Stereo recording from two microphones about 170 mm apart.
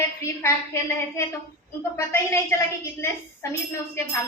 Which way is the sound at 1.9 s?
15° left (ahead or behind).